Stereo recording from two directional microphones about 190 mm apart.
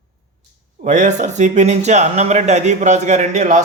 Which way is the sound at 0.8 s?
40° right (ahead or behind).